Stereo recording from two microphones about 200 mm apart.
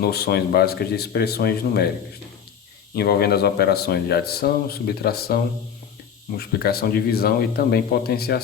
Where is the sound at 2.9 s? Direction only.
50° left (ahead or behind).